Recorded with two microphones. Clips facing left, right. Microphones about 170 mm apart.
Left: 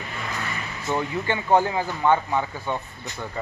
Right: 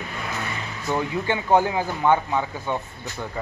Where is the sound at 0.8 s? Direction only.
10° right (ahead or behind).